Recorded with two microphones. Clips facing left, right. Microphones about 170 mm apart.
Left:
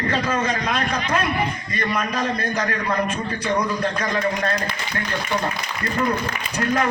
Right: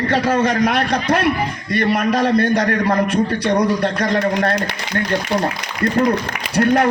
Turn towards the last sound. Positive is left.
turn(degrees=-65)  # may be behind; listen again after turning